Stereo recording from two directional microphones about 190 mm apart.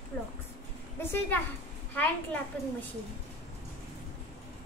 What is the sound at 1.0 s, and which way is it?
A child's voice, 10° left (ahead or behind).